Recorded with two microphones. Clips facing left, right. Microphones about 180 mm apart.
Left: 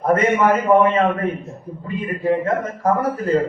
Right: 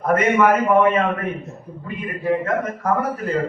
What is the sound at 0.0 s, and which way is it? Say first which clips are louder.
A man's voice: even; 30° left (ahead or behind).